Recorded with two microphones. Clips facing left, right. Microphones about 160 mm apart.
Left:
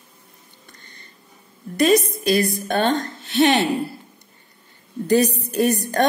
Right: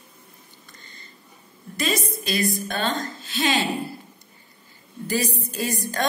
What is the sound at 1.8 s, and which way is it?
Speech, 60° left (ahead or behind).